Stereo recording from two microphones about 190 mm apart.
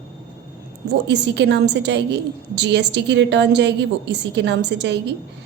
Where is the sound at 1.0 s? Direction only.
65° right (ahead or behind).